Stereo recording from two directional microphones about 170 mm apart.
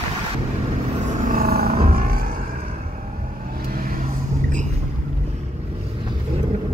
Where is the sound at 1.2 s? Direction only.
55° right (ahead or behind).